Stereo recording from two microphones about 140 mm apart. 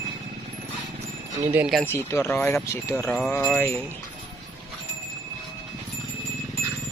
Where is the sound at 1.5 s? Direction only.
10° right (ahead or behind).